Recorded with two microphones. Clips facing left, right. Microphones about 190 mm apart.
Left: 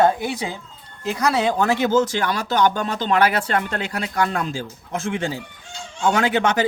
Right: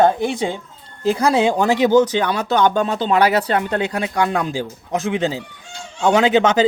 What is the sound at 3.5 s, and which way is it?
Speech, 20° right (ahead or behind).